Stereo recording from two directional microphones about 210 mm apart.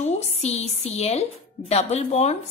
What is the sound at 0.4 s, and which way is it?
Speech, 30° left (ahead or behind).